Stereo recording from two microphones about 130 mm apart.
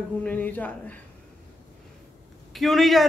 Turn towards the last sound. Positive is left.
turn(degrees=0)  # may be behind; listen again after turning